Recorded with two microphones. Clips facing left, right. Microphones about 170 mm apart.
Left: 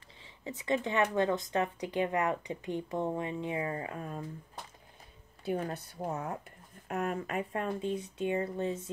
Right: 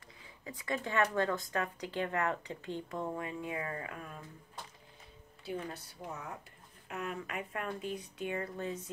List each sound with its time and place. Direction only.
0.2 s speech: 25° left (ahead or behind)
5.4 s speech: 50° left (ahead or behind); by 8.9 s 25° left (ahead or behind)